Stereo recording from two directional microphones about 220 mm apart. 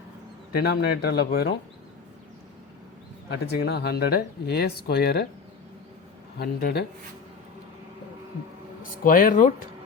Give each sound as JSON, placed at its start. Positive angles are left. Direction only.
{"t": 0.5, "sound": "speech", "side_deg": 45}
{"t": 3.2, "sound": "speech", "side_deg": 50}
{"t": 6.4, "sound": "speech", "side_deg": 45}
{"t": 8.8, "sound": "speech", "side_deg": 40}